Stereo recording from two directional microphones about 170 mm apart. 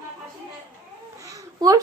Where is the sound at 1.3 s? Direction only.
20° right (ahead or behind).